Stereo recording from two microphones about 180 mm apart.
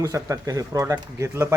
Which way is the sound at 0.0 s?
20° right (ahead or behind).